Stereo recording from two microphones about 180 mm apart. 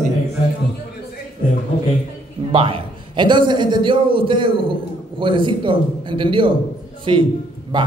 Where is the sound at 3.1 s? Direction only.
25° right (ahead or behind).